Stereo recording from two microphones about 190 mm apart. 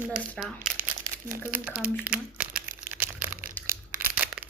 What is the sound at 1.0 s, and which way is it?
Crumpling, 45° right (ahead or behind).